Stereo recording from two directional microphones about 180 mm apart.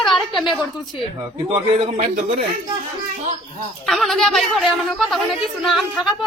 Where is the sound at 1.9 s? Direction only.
45° right (ahead or behind).